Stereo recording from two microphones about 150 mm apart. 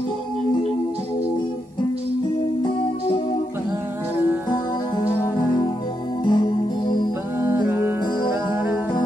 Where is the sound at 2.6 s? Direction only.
35° left (ahead or behind).